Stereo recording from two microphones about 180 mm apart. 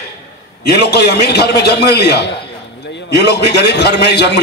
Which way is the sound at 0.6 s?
65° left (ahead or behind).